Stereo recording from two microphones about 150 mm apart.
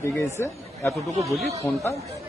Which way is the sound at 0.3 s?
15° left (ahead or behind).